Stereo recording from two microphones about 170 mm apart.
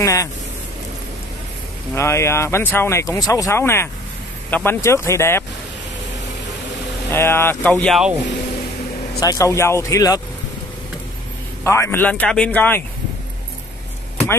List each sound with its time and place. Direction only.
0.0 s speech: 20° left (ahead or behind)
2.0 s speech: 15° left (ahead or behind)
7.1 s speech: 15° left (ahead or behind)
9.2 s speech: 20° left (ahead or behind)
11.6 s speech: 15° left (ahead or behind)